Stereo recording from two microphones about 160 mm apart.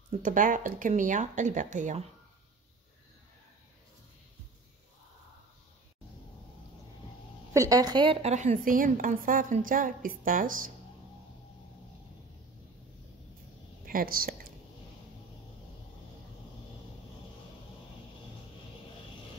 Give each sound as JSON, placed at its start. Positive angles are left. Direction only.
{"t": 0.1, "sound": "speech", "side_deg": -55}
{"t": 7.5, "sound": "a woman's voice", "side_deg": -20}
{"t": 13.8, "sound": "speech", "side_deg": -60}